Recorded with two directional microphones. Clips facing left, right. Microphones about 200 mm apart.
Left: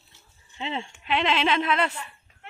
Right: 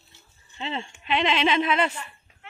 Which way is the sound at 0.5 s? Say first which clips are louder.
Even; 10° left (ahead or behind).